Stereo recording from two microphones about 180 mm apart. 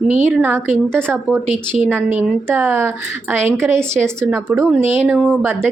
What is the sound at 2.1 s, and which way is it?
A woman's voice, 10° right (ahead or behind).